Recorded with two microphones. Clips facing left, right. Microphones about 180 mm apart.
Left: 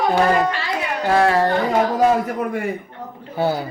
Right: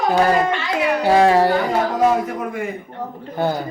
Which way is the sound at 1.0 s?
15° right (ahead or behind).